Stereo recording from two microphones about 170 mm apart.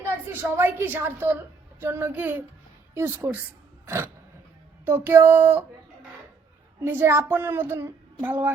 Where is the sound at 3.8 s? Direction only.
15° right (ahead or behind).